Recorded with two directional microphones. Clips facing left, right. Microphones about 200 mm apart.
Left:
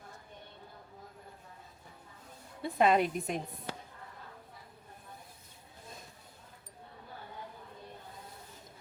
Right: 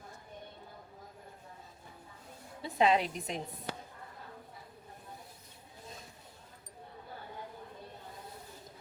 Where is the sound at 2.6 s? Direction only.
55° left (ahead or behind).